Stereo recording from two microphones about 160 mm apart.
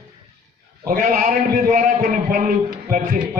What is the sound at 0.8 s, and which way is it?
A man's voice, 55° right (ahead or behind).